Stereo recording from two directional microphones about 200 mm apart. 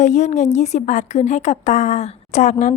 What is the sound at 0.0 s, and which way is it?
Speech, 35° left (ahead or behind).